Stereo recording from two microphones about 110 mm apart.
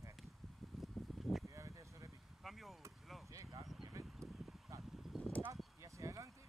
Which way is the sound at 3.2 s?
30° right (ahead or behind).